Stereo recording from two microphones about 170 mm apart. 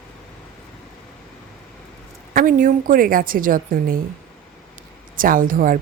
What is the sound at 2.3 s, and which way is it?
A woman's voice, 55° right (ahead or behind).